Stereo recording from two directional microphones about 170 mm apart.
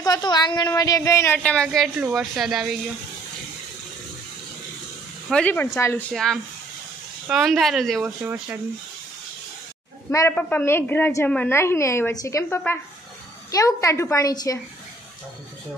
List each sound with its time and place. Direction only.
0.0 s a woman's voice: 25° left (ahead or behind); by 1.9 s 5° left (ahead or behind)
2.0 s speech: 5° right (ahead or behind)
5.3 s a woman's voice: 10° left (ahead or behind)
6.1 s speech: centre (ahead or behind)
10.1 s a woman's voice: 10° left (ahead or behind)